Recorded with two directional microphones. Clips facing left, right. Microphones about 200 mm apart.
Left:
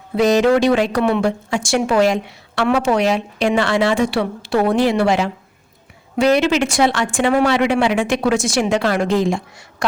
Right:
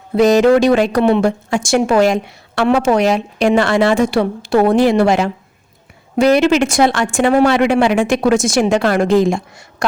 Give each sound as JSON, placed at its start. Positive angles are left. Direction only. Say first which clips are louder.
{"t": 0.2, "sound": "speech", "louder": "right 4 dB", "side_deg": -45}